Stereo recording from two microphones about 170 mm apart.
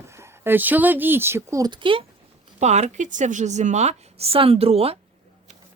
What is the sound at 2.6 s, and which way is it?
A woman's voice, 40° right (ahead or behind).